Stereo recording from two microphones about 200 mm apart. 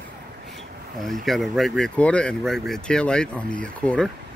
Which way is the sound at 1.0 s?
Centre (ahead or behind).